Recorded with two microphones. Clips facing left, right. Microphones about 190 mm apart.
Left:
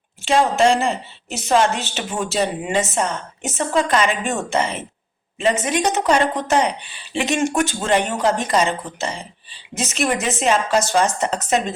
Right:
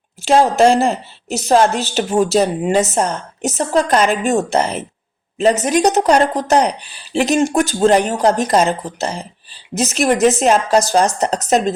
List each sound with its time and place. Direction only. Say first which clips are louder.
0.2 s a woman's voice: right 5 dB; 40° right (ahead or behind)